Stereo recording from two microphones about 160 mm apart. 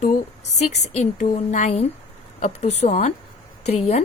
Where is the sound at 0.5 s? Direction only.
45° left (ahead or behind).